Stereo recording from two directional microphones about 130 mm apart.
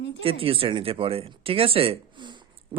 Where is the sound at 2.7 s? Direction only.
35° right (ahead or behind).